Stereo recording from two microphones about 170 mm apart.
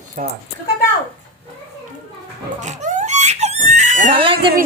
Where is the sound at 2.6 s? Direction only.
45° right (ahead or behind).